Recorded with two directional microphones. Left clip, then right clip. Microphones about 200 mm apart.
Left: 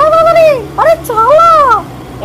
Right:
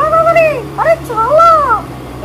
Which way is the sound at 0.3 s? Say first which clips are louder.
Left 3 dB; 40° left (ahead or behind).